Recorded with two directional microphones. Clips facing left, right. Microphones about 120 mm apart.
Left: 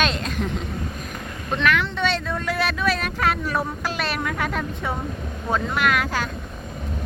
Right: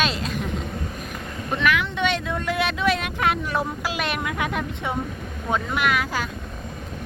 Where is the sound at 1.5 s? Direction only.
10° right (ahead or behind).